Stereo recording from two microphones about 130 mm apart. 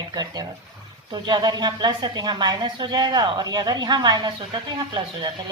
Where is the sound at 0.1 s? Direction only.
30° right (ahead or behind).